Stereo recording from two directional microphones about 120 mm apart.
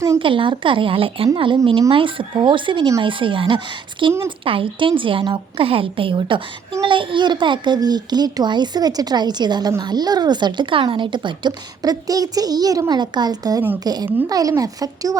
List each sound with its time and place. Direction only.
0.2 s a woman's voice: 45° right (ahead or behind); by 15.2 s 30° right (ahead or behind)